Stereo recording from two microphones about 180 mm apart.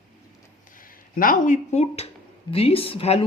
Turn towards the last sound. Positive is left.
turn(degrees=30)  # may be behind; listen again after turning